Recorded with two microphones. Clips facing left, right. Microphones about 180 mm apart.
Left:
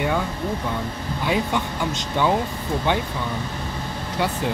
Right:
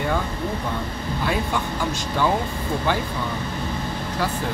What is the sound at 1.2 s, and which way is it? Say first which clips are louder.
Speech: left 2 dB; 15° left (ahead or behind).